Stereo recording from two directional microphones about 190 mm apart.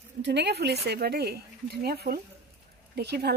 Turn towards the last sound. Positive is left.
turn(degrees=-60)  # may be behind; listen again after turning